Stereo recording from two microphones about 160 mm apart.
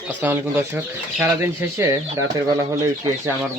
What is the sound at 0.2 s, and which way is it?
Speech, 15° right (ahead or behind).